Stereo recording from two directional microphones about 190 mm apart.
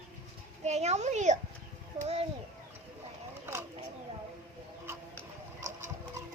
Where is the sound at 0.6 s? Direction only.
35° right (ahead or behind).